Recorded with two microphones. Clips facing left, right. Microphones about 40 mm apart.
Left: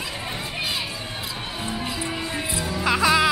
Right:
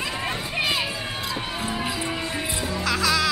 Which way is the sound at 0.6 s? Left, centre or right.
Centre.